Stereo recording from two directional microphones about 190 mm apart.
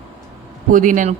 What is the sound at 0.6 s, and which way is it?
Speech, 45° right (ahead or behind).